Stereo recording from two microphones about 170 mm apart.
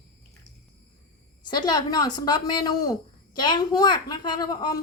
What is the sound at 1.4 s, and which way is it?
A woman's voice, 25° left (ahead or behind).